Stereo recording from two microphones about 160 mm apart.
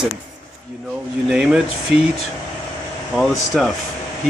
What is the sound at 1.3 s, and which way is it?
Speech, 5° right (ahead or behind).